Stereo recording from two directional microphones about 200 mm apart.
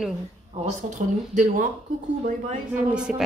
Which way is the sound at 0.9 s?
40° right (ahead or behind).